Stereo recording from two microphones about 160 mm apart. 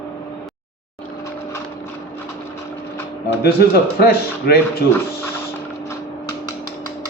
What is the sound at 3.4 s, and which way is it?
A man's voice, 75° left (ahead or behind).